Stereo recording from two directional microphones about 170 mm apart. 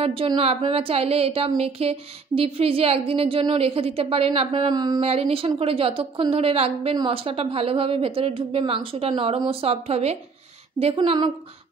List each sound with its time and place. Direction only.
0.0 s a woman's voice: 35° right (ahead or behind)
5.0 s a woman's voice: 35° right (ahead or behind)